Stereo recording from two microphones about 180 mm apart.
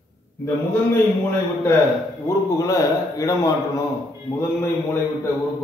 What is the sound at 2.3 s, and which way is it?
A man's voice, 15° left (ahead or behind).